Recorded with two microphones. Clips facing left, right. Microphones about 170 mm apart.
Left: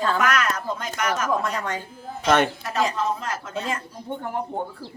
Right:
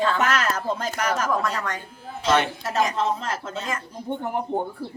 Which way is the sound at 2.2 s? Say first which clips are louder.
Left 2 dB; 55° left (ahead or behind).